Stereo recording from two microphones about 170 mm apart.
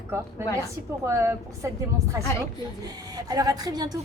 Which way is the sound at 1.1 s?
15° right (ahead or behind).